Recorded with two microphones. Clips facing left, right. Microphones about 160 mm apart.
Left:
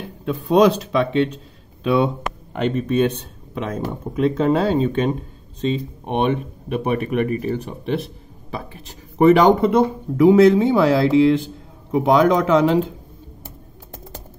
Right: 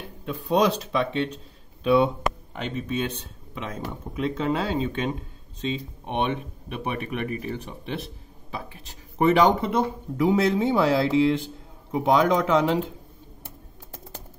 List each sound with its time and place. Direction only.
0.2 s speech: 85° left
2.5 s speech: 60° left (ahead or behind)
9.2 s speech: 60° left (ahead or behind); by 12.8 s 80° left